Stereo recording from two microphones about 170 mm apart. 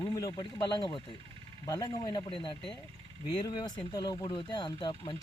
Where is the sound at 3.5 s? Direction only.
25° left (ahead or behind).